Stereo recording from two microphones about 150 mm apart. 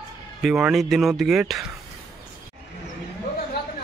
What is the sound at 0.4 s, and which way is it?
Speech, 5° right (ahead or behind).